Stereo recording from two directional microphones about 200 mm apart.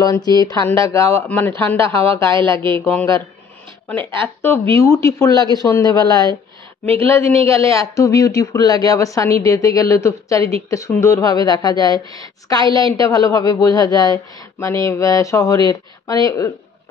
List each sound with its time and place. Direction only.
0.0 s a woman's voice: 15° left (ahead or behind)
4.4 s a woman's voice: 10° left (ahead or behind)
7.4 s a woman's voice: 15° left (ahead or behind)